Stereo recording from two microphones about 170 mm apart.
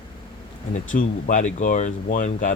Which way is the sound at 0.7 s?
50° left (ahead or behind).